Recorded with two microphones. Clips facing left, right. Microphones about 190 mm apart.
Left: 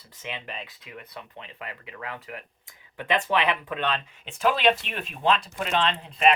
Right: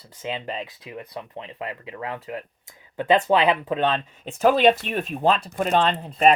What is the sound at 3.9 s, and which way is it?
Speech, 40° right (ahead or behind).